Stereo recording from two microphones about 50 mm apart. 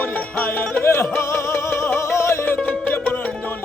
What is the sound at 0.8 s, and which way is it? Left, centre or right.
Music, left.